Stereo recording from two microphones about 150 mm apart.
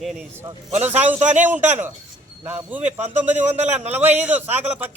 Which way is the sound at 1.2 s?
55° right (ahead or behind).